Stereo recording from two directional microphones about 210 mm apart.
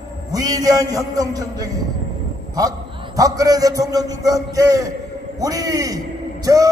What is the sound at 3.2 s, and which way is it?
A man's voice, 15° right (ahead or behind).